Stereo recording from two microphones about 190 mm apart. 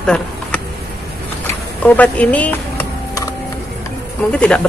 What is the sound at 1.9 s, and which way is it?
Speech, 10° left (ahead or behind).